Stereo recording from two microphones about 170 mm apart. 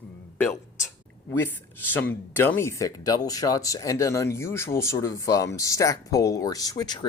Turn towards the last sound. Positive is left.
turn(degrees=25)  # may be behind; listen again after turning